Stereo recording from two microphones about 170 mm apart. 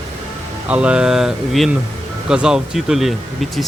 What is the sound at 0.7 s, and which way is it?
Speech, 5° right (ahead or behind).